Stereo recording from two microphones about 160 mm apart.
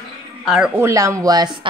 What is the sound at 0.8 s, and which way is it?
Speech, 20° right (ahead or behind).